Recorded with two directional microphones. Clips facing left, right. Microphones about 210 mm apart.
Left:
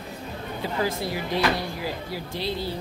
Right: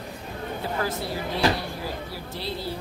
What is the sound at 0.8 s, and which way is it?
Speech, 15° left (ahead or behind).